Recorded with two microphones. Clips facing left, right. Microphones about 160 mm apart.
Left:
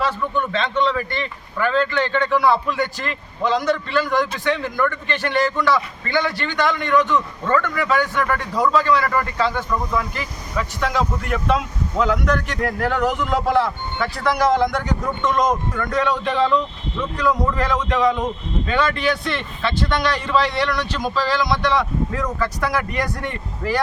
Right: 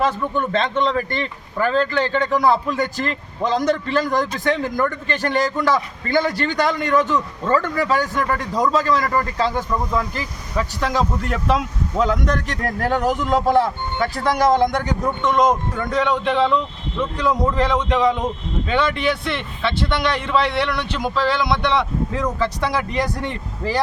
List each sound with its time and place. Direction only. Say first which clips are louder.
0.0 s a man's voice: right 2 dB; 45° right (ahead or behind)
15.2 s speech: right 2 dB; 25° right (ahead or behind)